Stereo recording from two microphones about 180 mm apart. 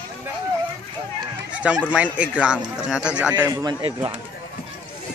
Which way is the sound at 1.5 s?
5° right (ahead or behind).